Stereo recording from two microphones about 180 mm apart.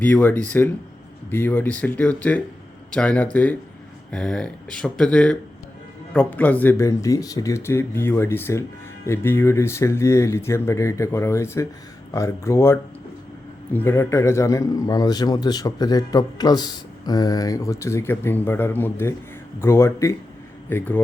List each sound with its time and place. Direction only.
0.0 s a man's voice: 10° left (ahead or behind)